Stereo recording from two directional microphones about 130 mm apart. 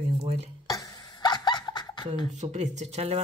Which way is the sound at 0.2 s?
55° right (ahead or behind).